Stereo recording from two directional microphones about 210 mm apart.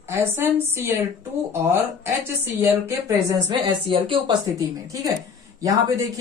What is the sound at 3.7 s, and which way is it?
A woman's voice, 25° right (ahead or behind).